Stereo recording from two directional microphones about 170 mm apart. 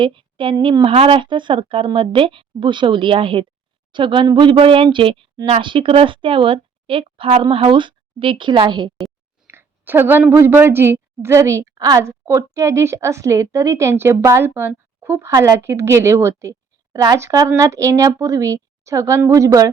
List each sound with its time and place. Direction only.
0.0 s a woman's voice: 30° right (ahead or behind)
9.5 s a woman's voice: 15° right (ahead or behind)